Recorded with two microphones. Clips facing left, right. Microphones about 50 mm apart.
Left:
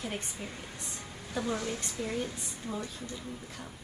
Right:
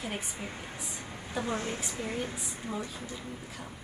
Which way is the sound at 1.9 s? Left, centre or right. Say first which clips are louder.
Even; centre.